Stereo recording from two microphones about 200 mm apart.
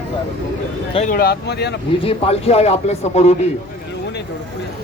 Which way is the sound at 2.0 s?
30° left (ahead or behind).